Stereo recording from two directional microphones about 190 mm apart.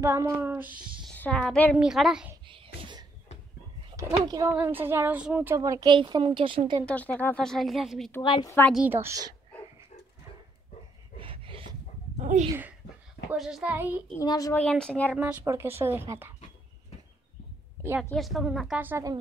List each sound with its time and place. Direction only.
0.0 s a woman's voice: 15° right (ahead or behind)
1.1 s a woman's voice: 5° left (ahead or behind)
2.4 s a sound: 25° right (ahead or behind)
3.9 s a woman's voice: 20° right (ahead or behind)
6.9 s a woman's voice: 5° left (ahead or behind)
8.2 s a child's voice: 25° left (ahead or behind)
8.7 s a woman's voice: 10° right (ahead or behind)
11.1 s a sound: 25° right (ahead or behind)
13.3 s a woman's voice: centre (ahead or behind)
14.1 s a child's voice: 20° left (ahead or behind)
14.6 s speech: 5° left (ahead or behind)
15.1 s a woman's voice: 10° right (ahead or behind)
18.0 s a woman's voice: centre (ahead or behind)
18.8 s a woman's voice: 10° right (ahead or behind)